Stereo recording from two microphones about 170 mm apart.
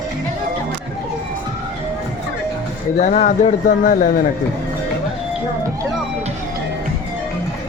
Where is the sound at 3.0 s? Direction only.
45° left (ahead or behind).